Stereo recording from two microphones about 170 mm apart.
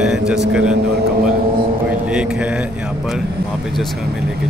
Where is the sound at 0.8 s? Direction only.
70° right (ahead or behind).